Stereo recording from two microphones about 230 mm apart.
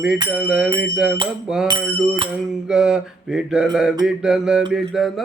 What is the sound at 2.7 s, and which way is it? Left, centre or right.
Mantra, centre.